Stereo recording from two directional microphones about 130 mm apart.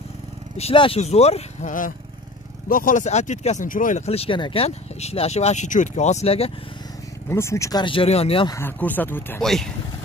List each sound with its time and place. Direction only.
0.6 s speech: 45° left (ahead or behind)
1.7 s speech: 90° left
4.0 s speech: 50° left (ahead or behind)
7.2 s speech: 20° left (ahead or behind)
7.8 s speech: 45° left (ahead or behind)
8.5 s speech: 20° left (ahead or behind)
9.4 s speech: 5° left (ahead or behind)